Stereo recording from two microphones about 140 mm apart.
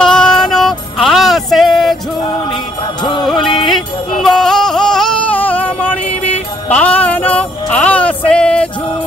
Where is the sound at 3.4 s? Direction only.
Centre (ahead or behind).